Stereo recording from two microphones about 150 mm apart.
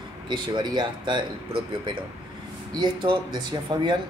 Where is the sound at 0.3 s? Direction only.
30° right (ahead or behind).